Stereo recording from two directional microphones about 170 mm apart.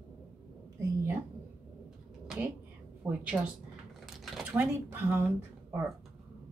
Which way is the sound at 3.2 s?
5° right (ahead or behind).